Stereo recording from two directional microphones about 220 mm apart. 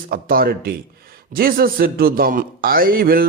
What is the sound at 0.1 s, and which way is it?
A man's voice, 40° right (ahead or behind).